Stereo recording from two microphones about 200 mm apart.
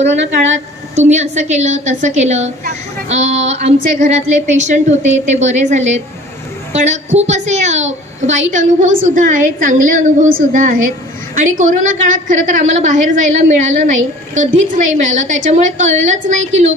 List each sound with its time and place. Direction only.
0.9 s a woman's voice: 35° right (ahead or behind)